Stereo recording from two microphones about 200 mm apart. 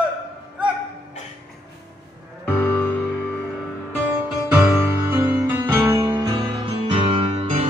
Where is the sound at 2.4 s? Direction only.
10° left (ahead or behind).